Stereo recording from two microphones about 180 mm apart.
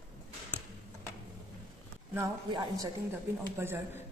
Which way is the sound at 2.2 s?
20° right (ahead or behind).